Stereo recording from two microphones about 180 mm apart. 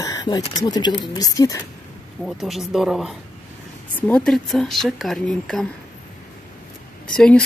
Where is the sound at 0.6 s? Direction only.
25° left (ahead or behind).